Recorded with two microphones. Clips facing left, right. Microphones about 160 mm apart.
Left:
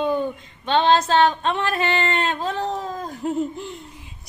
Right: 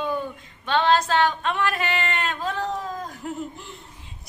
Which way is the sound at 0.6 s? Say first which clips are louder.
Left 3 dB; 25° left (ahead or behind).